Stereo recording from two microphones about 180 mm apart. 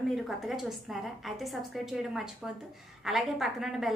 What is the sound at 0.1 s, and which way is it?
A woman's voice, centre (ahead or behind).